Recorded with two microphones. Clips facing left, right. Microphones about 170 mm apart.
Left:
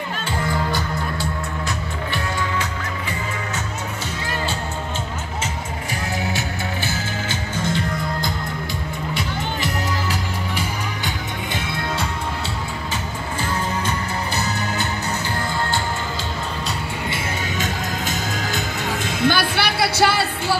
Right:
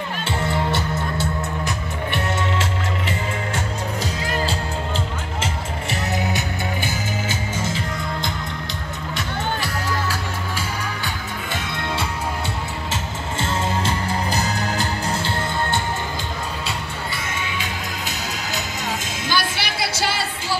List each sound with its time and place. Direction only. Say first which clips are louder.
0.5 s music: right 1 dB; 25° right (ahead or behind)
6.1 s music: even; 15° right (ahead or behind)
7.6 s music: left 3 dB; centre (ahead or behind)
9.1 s music: right 2 dB; 15° left (ahead or behind)
12.9 s music: even; 25° right (ahead or behind)
17.5 s music: left 4 dB; 45° left (ahead or behind)